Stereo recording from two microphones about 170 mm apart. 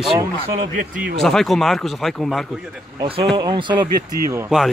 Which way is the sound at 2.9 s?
30° right (ahead or behind).